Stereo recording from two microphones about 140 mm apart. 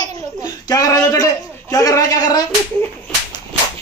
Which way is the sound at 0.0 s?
25° left (ahead or behind).